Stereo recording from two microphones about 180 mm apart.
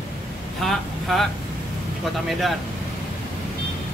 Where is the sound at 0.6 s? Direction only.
Centre (ahead or behind).